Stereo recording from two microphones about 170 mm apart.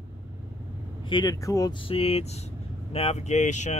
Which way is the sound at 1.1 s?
20° left (ahead or behind).